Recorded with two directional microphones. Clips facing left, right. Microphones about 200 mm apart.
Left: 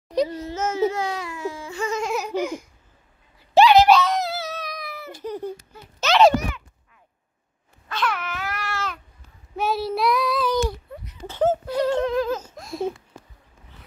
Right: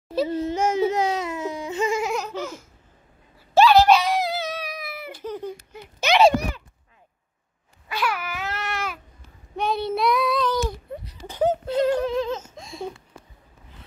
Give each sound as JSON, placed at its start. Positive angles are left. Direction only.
{"t": 0.3, "sound": "a child's voice", "side_deg": -25}
{"t": 0.6, "sound": "baby cry", "side_deg": -15}
{"t": 2.1, "sound": "laughter", "side_deg": 15}
{"t": 3.5, "sound": "screaming", "side_deg": 20}
{"t": 3.9, "sound": "baby cry", "side_deg": -10}
{"t": 5.2, "sound": "a sound", "side_deg": 15}
{"t": 5.5, "sound": "baby cry", "side_deg": -15}
{"t": 7.9, "sound": "cat", "side_deg": -5}
{"t": 8.5, "sound": "a sound", "side_deg": -20}
{"t": 9.6, "sound": "child singing", "side_deg": 5}
{"t": 11.6, "sound": "a sound", "side_deg": -20}
{"t": 12.0, "sound": "a sound", "side_deg": 0}